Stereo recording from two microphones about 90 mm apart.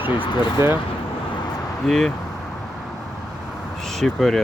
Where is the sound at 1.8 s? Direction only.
5° left (ahead or behind).